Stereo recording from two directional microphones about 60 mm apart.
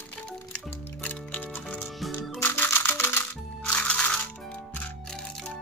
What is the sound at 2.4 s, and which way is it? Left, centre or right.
Music, left.